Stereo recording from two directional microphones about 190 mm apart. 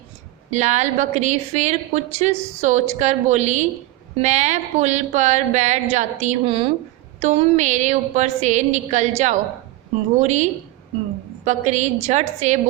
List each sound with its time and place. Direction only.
0.5 s a woman's voice: 40° right (ahead or behind)